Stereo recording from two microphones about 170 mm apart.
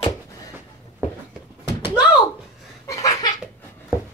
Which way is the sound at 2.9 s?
20° left (ahead or behind).